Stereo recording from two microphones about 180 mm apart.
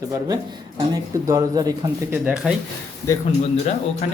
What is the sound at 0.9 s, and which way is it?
Speech, 20° right (ahead or behind).